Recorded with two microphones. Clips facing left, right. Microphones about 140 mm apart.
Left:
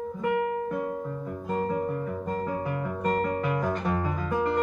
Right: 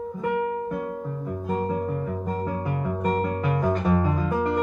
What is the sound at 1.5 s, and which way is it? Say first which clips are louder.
Guitar: right 1 dB; 15° right (ahead or behind).